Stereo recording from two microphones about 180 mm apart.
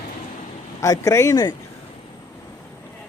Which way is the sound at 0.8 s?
20° left (ahead or behind).